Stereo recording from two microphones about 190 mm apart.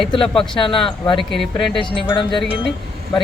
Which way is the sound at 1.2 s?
Centre (ahead or behind).